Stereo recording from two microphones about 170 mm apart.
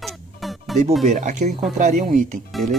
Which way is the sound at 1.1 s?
45° right (ahead or behind).